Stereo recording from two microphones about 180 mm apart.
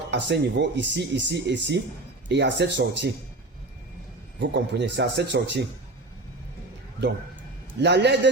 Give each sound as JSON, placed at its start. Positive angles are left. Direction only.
{"t": 0.1, "sound": "speech", "side_deg": -75}
{"t": 4.4, "sound": "speech", "side_deg": -75}
{"t": 7.8, "sound": "speech", "side_deg": -70}